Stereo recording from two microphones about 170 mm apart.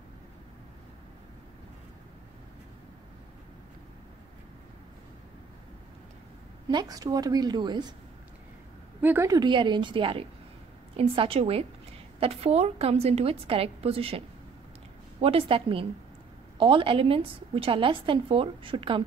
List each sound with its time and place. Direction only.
6.7 s a woman's voice: 25° right (ahead or behind)
9.0 s a woman's voice: 15° right (ahead or behind); by 19.0 s 30° right (ahead or behind)